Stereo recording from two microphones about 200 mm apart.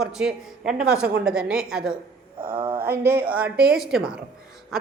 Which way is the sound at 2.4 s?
25° right (ahead or behind).